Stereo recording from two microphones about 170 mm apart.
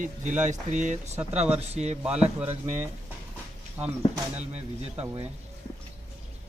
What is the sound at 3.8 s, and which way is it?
Speech, 10° right (ahead or behind).